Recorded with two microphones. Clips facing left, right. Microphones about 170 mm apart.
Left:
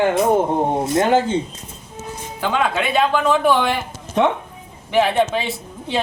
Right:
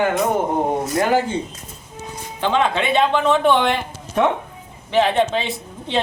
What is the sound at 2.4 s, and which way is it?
Speech, 5° left (ahead or behind).